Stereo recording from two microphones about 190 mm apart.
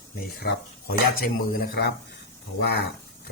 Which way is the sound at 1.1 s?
50° left (ahead or behind).